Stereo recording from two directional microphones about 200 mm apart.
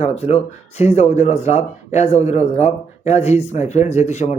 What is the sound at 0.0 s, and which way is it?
Speech, 30° left (ahead or behind).